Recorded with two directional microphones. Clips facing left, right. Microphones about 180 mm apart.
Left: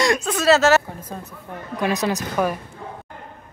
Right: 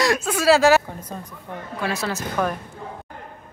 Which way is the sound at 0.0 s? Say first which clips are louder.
Even; 5° right (ahead or behind).